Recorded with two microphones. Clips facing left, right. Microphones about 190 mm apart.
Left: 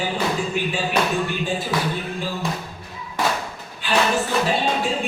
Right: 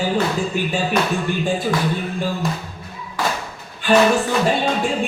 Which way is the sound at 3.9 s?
50° right (ahead or behind).